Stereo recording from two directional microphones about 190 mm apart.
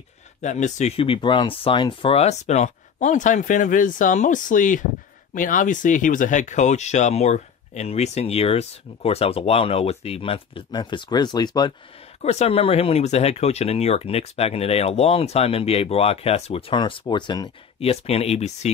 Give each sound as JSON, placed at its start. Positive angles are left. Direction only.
{"t": 0.4, "sound": "speech", "side_deg": 40}
{"t": 12.2, "sound": "speech", "side_deg": 35}